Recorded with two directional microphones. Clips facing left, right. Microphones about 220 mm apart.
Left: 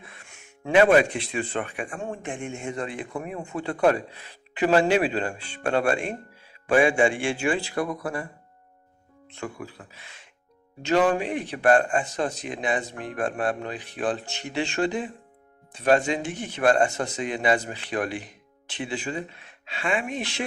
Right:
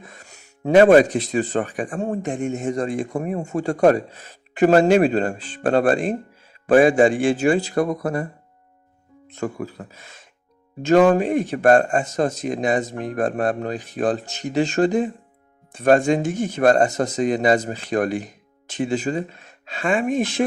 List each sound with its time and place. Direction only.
0.0 s speech: 40° right (ahead or behind)
9.3 s speech: 45° right (ahead or behind)